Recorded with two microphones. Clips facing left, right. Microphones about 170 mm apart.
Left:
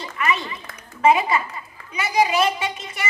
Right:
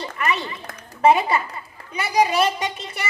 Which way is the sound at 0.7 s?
40° right (ahead or behind).